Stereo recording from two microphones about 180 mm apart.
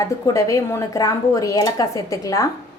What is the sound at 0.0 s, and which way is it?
A woman's voice, 15° left (ahead or behind).